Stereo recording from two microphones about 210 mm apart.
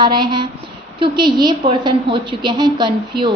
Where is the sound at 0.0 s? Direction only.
20° right (ahead or behind).